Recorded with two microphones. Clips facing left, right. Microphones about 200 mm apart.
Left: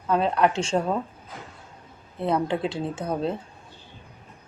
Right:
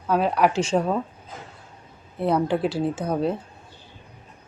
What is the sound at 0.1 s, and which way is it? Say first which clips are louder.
Speech: right 1 dB; 5° right (ahead or behind).